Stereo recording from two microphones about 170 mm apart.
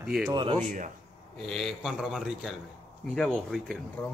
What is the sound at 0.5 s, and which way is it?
Speech, 50° right (ahead or behind).